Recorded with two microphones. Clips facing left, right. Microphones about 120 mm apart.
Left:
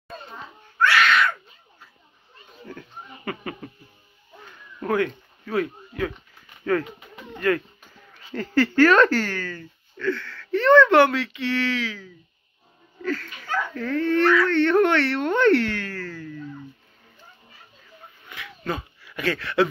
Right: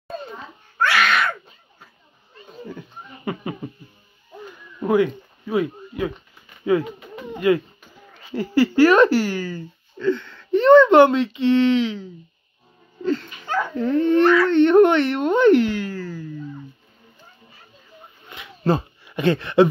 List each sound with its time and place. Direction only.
3.3 s speech: 15° right (ahead or behind)
4.7 s speech: 15° right (ahead or behind)
18.2 s a sound: 25° right (ahead or behind)
18.7 s speech: 30° right (ahead or behind)